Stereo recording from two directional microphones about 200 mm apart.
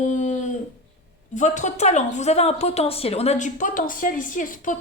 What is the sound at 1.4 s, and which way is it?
A woman's voice, 35° left (ahead or behind).